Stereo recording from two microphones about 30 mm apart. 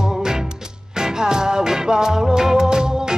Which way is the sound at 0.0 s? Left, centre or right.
Right.